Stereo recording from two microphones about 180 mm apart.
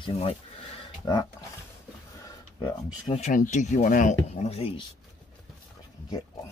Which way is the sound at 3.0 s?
40° left (ahead or behind).